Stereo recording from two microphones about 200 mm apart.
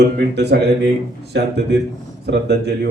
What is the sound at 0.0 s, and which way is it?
Speech, 60° right (ahead or behind).